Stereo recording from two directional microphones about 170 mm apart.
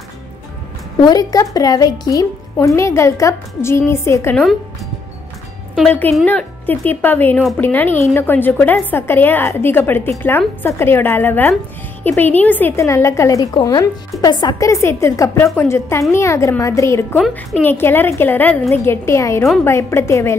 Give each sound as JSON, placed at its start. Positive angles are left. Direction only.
{"t": 1.0, "sound": "a woman's voice", "side_deg": 20}
{"t": 5.8, "sound": "a woman's voice", "side_deg": 10}